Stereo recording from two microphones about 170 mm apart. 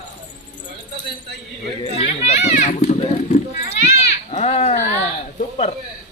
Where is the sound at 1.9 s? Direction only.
40° left (ahead or behind).